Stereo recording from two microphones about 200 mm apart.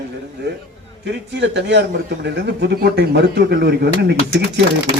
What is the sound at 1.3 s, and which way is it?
Speech, 60° right (ahead or behind).